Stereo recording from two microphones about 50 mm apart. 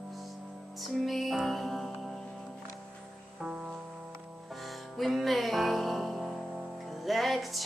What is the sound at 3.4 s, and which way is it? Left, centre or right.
Music, centre.